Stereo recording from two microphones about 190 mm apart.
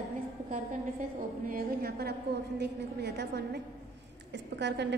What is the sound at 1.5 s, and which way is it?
A woman's voice, 55° right (ahead or behind).